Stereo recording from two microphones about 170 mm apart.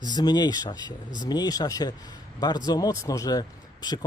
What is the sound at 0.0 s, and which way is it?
Speech, 25° left (ahead or behind).